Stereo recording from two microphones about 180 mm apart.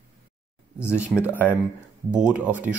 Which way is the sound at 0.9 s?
5° right (ahead or behind).